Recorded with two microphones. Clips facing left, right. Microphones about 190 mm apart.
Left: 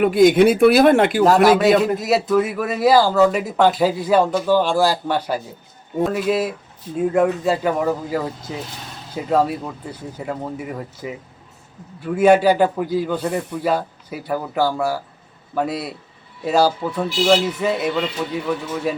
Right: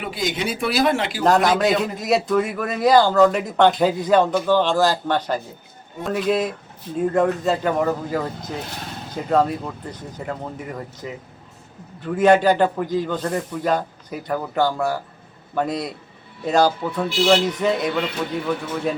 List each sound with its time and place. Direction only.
0.0 s speech: 55° left (ahead or behind)
1.2 s a man's voice: 5° left (ahead or behind)